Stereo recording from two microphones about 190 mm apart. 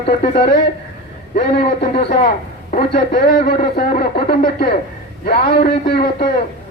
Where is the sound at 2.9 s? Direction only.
55° left (ahead or behind).